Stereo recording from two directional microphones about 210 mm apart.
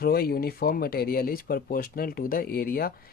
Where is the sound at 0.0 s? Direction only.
45° left (ahead or behind).